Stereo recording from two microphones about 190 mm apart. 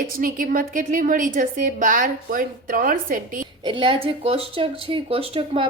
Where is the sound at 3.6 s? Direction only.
25° right (ahead or behind).